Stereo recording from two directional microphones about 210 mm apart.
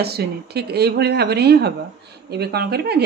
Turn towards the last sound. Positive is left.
turn(degrees=-50)  # may be behind; listen again after turning